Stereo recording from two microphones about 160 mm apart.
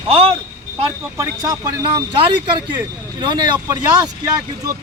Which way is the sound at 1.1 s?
20° right (ahead or behind).